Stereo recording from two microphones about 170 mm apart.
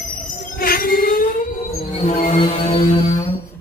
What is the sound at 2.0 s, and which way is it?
Music, 40° left (ahead or behind).